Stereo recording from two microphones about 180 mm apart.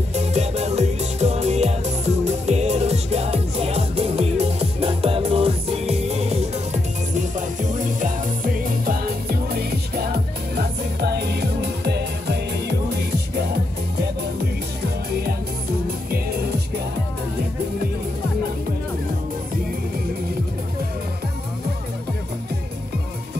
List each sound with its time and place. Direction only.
0.1 s music: 35° right (ahead or behind)
8.8 s music: 55° right (ahead or behind)
16.1 s music: 60° right (ahead or behind)